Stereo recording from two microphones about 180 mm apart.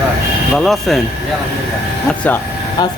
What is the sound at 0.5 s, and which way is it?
Speech, centre (ahead or behind).